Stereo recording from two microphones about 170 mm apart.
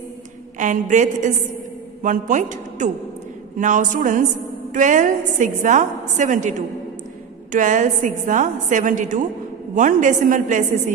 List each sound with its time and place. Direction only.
0.6 s a woman's voice: 45° right (ahead or behind)
7.5 s a woman's voice: 45° right (ahead or behind)